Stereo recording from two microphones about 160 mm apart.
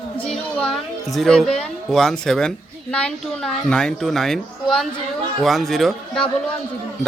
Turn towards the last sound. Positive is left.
turn(degrees=0)  # may be behind; listen again after turning